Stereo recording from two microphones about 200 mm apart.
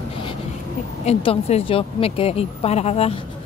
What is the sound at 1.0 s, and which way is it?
A woman's voice, 30° left (ahead or behind).